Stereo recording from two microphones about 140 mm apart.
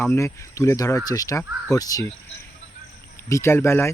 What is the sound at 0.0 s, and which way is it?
Speech, 15° left (ahead or behind).